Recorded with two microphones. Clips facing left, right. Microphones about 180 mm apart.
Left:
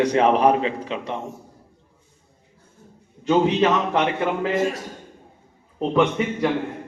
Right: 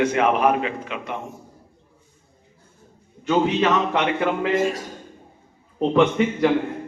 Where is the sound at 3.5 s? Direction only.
30° left (ahead or behind).